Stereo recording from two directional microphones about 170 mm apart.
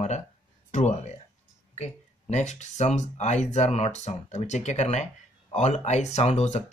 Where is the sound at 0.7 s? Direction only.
45° left (ahead or behind).